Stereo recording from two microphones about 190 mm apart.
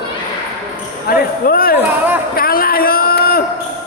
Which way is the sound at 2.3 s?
50° left (ahead or behind).